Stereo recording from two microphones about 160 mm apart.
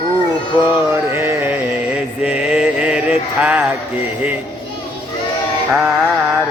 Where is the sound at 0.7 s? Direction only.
15° right (ahead or behind).